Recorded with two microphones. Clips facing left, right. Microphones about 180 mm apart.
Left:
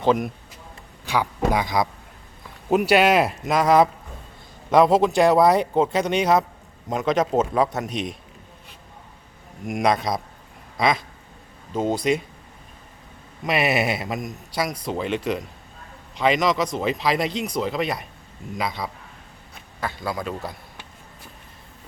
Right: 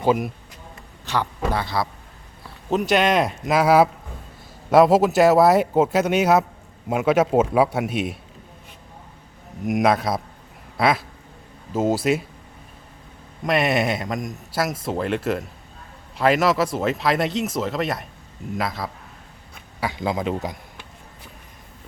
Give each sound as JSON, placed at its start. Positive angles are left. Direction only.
{"t": 0.0, "sound": "speech", "side_deg": -5}
{"t": 1.0, "sound": "a man's voice", "side_deg": 10}
{"t": 9.6, "sound": "speech", "side_deg": 0}
{"t": 10.8, "sound": "a sound", "side_deg": -5}
{"t": 11.7, "sound": "speech", "side_deg": -5}
{"t": 13.4, "sound": "speech", "side_deg": 5}
{"t": 19.8, "sound": "a man's voice", "side_deg": -15}